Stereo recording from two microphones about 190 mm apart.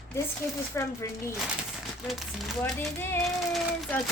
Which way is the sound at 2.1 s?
Centre (ahead or behind).